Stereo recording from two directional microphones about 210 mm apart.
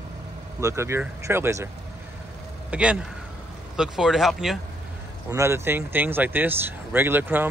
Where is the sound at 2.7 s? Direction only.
5° right (ahead or behind).